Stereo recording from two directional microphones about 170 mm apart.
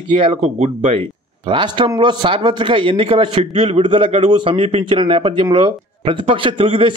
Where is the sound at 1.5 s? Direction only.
30° right (ahead or behind).